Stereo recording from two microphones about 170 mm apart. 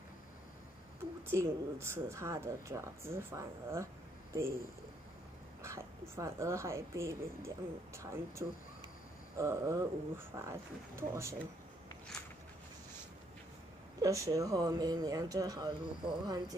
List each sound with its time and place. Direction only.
1.3 s a woman's voice: 15° right (ahead or behind)
5.6 s a woman's voice: 15° right (ahead or behind)
14.0 s speech: 20° right (ahead or behind)